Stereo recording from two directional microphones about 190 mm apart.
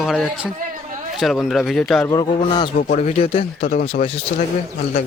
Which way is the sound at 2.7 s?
40° left (ahead or behind).